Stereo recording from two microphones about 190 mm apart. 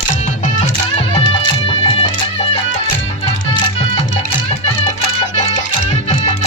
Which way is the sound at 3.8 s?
35° left (ahead or behind).